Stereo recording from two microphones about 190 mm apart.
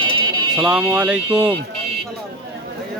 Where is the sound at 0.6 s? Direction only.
5° right (ahead or behind).